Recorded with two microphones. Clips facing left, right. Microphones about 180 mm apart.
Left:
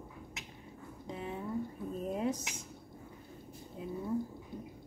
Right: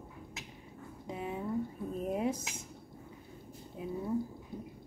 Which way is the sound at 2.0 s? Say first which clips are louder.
Right 1 dB; 15° right (ahead or behind).